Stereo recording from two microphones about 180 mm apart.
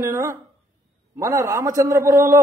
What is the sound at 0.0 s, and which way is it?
A man's voice, 20° right (ahead or behind).